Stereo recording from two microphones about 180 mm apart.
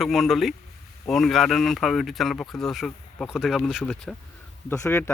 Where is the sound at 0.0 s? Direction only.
Centre (ahead or behind).